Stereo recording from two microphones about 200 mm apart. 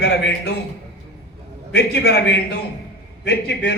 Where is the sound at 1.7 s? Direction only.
55° left (ahead or behind).